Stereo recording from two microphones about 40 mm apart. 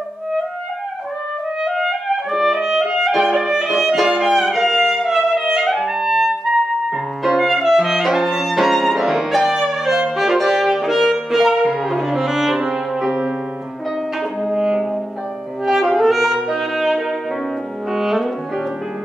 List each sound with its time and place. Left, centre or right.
1.8 s music: centre
2.3 s music: centre
5.7 s clarinet: centre
7.3 s music: centre
14.4 s french horn: centre
15.6 s brass instrument: centre
16.5 s saxophone: centre
17.9 s brass instrument: centre